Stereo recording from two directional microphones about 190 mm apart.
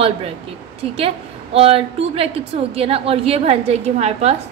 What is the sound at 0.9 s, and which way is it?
A woman's voice, 30° right (ahead or behind).